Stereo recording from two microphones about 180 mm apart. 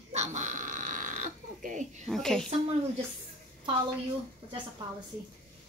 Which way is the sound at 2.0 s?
Centre (ahead or behind).